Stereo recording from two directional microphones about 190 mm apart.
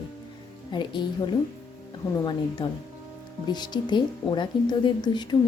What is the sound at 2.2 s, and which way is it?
Speech, 25° left (ahead or behind).